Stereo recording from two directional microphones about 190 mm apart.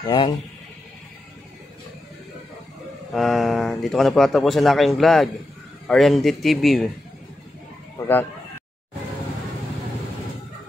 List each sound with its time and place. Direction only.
0.0 s a man's voice: 20° left (ahead or behind)
3.1 s speech: centre (ahead or behind)